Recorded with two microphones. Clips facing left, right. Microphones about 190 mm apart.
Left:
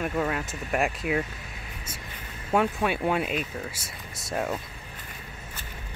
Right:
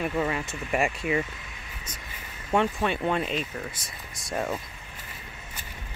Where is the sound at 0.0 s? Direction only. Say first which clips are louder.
Even; centre (ahead or behind).